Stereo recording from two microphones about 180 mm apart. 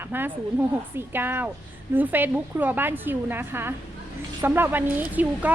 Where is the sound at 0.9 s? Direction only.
10° right (ahead or behind).